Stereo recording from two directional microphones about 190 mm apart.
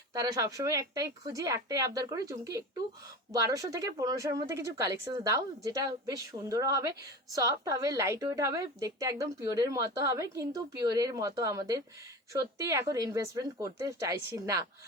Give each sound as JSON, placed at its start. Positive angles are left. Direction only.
{"t": 0.1, "sound": "a woman's voice", "side_deg": -20}